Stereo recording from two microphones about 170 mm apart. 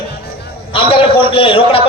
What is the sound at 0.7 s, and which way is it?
A man's voice, 30° left (ahead or behind).